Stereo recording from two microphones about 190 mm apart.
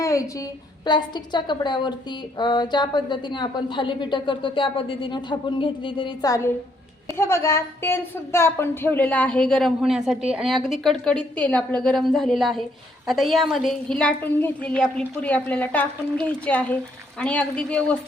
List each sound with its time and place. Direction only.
0.0 s a woman's voice: 15° left (ahead or behind)